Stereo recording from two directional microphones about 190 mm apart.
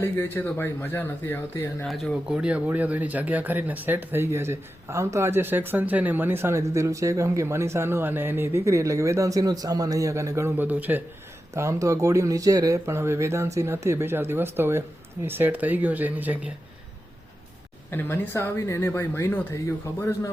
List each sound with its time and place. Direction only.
0.0 s speech: 10° left (ahead or behind)
1.8 s speech: centre (ahead or behind)
17.9 s speech: 10° left (ahead or behind)